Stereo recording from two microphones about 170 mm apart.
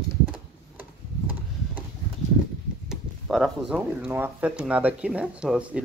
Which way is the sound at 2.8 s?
Centre (ahead or behind).